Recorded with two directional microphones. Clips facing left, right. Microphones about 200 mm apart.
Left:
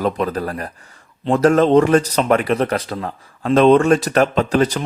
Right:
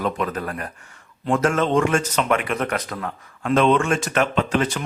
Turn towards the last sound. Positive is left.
turn(degrees=35)  # may be behind; listen again after turning